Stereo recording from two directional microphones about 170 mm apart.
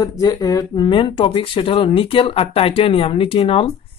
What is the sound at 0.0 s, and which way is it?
Speech, 20° left (ahead or behind).